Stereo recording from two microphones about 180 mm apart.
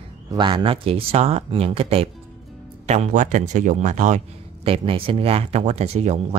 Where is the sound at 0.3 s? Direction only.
25° right (ahead or behind); by 4.2 s 40° right (ahead or behind).